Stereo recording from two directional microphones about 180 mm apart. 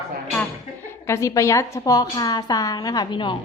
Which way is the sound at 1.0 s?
15° left (ahead or behind).